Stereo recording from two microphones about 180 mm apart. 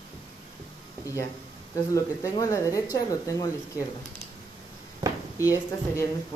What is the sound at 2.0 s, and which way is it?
Speech, 20° left (ahead or behind).